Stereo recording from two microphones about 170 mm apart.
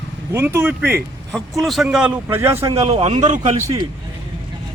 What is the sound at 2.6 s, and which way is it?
Speech, 35° right (ahead or behind).